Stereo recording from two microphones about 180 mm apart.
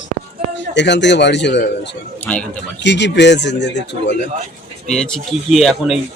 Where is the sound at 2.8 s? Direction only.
80° left.